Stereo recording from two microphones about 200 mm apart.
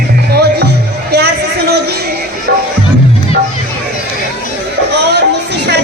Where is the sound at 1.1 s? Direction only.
55° right (ahead or behind).